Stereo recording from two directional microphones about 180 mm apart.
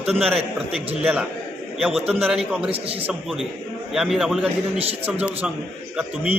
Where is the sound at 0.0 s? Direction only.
5° right (ahead or behind).